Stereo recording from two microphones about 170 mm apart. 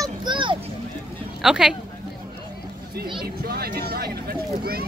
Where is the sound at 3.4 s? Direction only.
65° right (ahead or behind).